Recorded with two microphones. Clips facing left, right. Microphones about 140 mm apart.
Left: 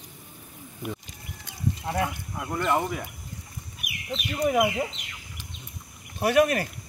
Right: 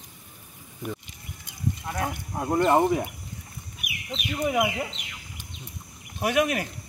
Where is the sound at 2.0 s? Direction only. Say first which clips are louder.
Right 5 dB; 35° right (ahead or behind).